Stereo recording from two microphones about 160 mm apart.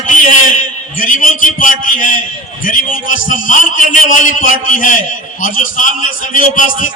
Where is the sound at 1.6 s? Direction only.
55° left (ahead or behind).